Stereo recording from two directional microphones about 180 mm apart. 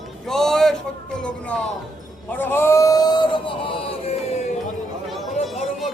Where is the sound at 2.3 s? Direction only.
10° left (ahead or behind); by 4.4 s 35° left (ahead or behind).